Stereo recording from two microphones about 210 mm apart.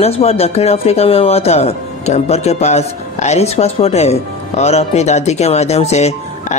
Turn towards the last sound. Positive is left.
turn(degrees=30)  # may be behind; listen again after turning